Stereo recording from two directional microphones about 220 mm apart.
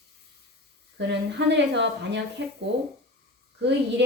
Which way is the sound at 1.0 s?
55° right (ahead or behind).